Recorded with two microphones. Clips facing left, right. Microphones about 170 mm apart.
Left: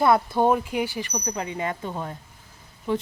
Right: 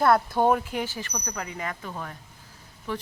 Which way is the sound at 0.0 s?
10° left (ahead or behind).